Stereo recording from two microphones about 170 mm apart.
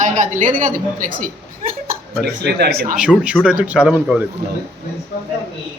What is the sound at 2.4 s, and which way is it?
Speech, 65° right (ahead or behind).